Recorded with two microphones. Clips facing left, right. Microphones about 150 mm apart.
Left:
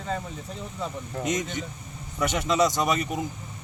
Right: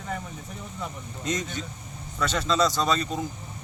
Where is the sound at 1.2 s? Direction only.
20° left (ahead or behind).